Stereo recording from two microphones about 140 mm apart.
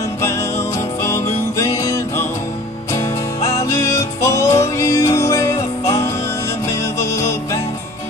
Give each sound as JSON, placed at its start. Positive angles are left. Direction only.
{"t": 0.2, "sound": "music", "side_deg": 20}
{"t": 3.4, "sound": "music", "side_deg": 20}